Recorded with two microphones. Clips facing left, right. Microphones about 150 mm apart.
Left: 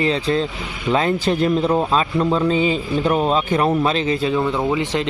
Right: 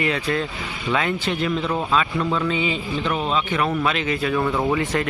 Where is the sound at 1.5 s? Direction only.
30° left (ahead or behind).